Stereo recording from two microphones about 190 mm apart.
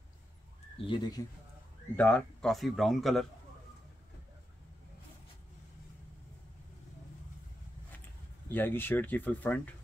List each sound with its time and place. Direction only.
0.7 s speech: 25° left (ahead or behind)
2.0 s speech: 10° left (ahead or behind)
8.5 s speech: 10° left (ahead or behind)